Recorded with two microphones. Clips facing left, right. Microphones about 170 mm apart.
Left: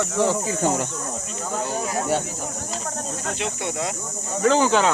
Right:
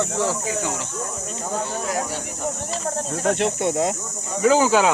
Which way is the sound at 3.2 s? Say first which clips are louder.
Right 9 dB; 60° right (ahead or behind).